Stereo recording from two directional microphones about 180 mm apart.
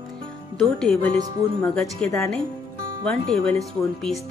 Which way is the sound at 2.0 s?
15° left (ahead or behind).